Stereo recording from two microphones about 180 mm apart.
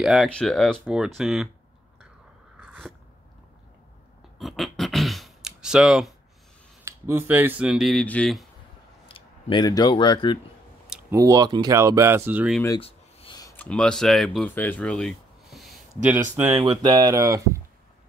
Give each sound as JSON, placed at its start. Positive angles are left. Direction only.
{"t": 0.0, "sound": "speech", "side_deg": 0}
{"t": 4.4, "sound": "speech", "side_deg": 0}
{"t": 6.8, "sound": "speech", "side_deg": -15}
{"t": 9.0, "sound": "speech", "side_deg": 30}
{"t": 10.9, "sound": "speech", "side_deg": -15}
{"t": 12.8, "sound": "writing", "side_deg": 30}
{"t": 13.6, "sound": "speech", "side_deg": 5}